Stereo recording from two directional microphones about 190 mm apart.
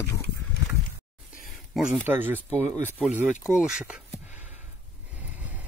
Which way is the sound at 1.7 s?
Centre (ahead or behind).